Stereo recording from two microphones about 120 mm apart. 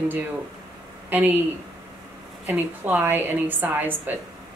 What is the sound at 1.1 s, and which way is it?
Speech, 15° right (ahead or behind).